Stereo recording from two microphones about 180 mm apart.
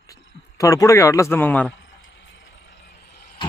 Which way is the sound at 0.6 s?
20° left (ahead or behind).